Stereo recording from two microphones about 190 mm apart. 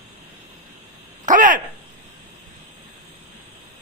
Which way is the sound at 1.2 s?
45° right (ahead or behind).